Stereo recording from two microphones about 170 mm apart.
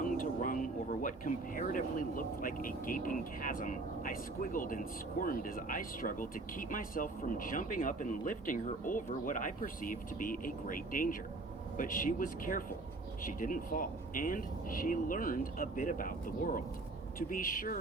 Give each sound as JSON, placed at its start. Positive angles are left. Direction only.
{"t": 0.0, "sound": "speech", "side_deg": 50}